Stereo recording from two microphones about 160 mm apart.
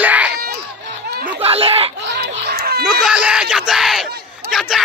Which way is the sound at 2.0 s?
90° right.